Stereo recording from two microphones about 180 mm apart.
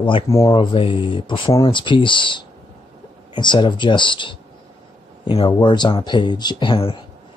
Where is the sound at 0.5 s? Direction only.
30° left (ahead or behind).